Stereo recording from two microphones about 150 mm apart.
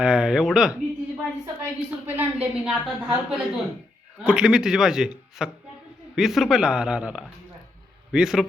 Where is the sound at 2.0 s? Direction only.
15° right (ahead or behind).